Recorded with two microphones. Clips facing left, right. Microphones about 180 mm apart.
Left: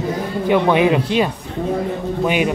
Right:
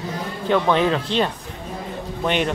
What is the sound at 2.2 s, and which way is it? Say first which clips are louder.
Speech: left 2 dB; 5° left (ahead or behind).